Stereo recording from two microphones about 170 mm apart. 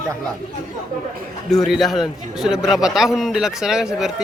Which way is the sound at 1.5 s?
Centre (ahead or behind).